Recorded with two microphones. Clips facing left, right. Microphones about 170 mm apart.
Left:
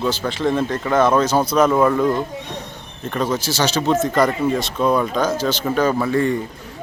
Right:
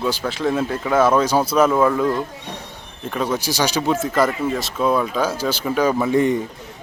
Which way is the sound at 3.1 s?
5° right (ahead or behind).